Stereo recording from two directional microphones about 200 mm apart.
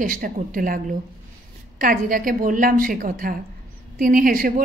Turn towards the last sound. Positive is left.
turn(degrees=-45)  # may be behind; listen again after turning